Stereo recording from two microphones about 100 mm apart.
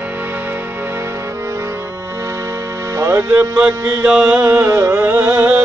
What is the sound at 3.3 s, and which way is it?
Speech, 15° right (ahead or behind).